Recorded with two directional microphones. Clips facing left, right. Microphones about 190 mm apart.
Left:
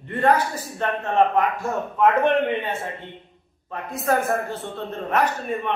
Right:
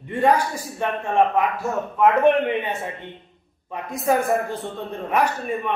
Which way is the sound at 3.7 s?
15° right (ahead or behind).